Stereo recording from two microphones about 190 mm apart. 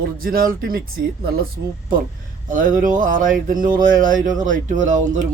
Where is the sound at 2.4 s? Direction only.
45° right (ahead or behind).